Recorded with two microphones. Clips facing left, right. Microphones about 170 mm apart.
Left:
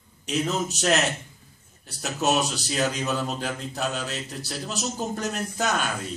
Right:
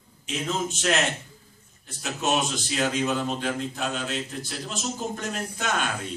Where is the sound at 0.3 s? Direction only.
40° left (ahead or behind).